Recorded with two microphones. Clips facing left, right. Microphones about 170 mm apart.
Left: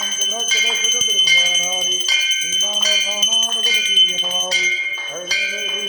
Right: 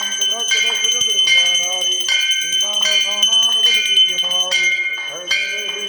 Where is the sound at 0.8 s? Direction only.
5° left (ahead or behind).